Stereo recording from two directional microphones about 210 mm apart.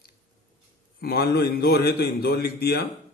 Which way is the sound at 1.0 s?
45° left (ahead or behind).